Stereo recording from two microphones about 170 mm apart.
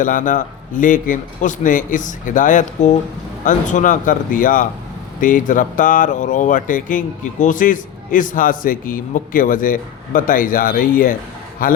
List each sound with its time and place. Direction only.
0.0 s a man's voice: 50° left (ahead or behind)